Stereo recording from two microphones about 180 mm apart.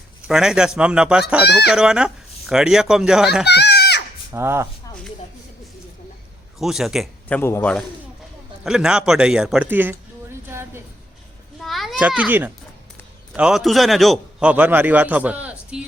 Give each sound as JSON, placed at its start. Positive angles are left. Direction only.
{"t": 0.3, "sound": "speech", "side_deg": -5}
{"t": 3.4, "sound": "goat", "side_deg": 65}
{"t": 4.3, "sound": "a man's voice", "side_deg": -15}
{"t": 6.6, "sound": "speech", "side_deg": 0}
{"t": 8.6, "sound": "speech", "side_deg": -5}
{"t": 10.5, "sound": "a sound", "side_deg": -15}
{"t": 11.6, "sound": "children playing", "side_deg": 0}
{"t": 13.3, "sound": "a man's voice", "side_deg": -5}